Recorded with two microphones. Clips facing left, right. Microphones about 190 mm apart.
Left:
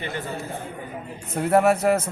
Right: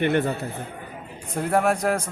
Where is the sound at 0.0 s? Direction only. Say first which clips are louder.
Right 10 dB; 60° right (ahead or behind).